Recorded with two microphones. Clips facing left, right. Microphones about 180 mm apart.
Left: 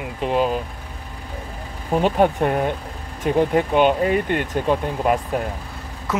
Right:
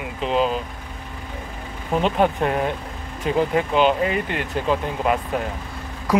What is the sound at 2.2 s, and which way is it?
Speech, 45° left (ahead or behind).